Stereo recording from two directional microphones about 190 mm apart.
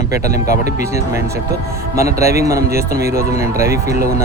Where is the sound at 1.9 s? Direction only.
15° right (ahead or behind).